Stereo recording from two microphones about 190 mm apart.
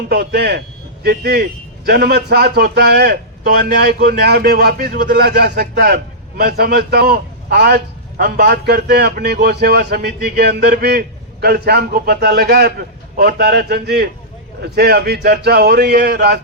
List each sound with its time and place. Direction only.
0.1 s a man's voice: 55° right (ahead or behind)